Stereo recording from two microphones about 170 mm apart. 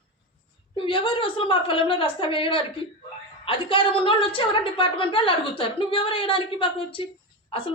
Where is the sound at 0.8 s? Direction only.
30° left (ahead or behind).